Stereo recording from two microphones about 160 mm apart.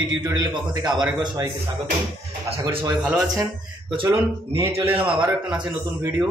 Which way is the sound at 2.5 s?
30° right (ahead or behind).